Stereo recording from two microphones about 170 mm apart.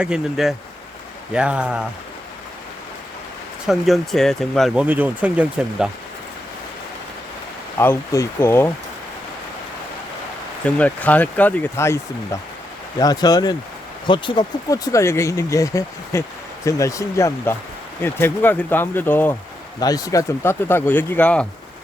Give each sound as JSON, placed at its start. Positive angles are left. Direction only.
{"t": 0.0, "sound": "speech", "side_deg": -5}
{"t": 3.7, "sound": "speech", "side_deg": 0}
{"t": 7.8, "sound": "speech", "side_deg": 15}
{"t": 10.8, "sound": "speech", "side_deg": 10}